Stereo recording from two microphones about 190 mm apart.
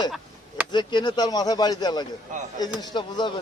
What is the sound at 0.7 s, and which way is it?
Speech, 25° left (ahead or behind).